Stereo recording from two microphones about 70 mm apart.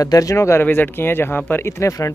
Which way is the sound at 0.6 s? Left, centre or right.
Left.